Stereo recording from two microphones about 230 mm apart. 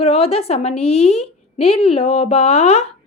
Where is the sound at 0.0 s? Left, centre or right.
Left.